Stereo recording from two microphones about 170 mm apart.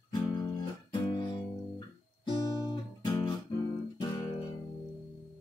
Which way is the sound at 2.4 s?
20° left (ahead or behind).